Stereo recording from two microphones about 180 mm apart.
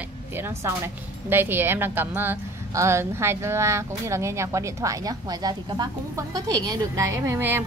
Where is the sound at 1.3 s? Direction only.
10° right (ahead or behind).